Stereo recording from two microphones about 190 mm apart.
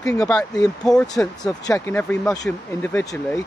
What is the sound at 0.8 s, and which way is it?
Speech, centre (ahead or behind).